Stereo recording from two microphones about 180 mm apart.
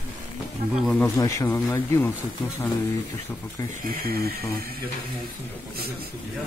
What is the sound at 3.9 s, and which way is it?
Speech, 55° right (ahead or behind).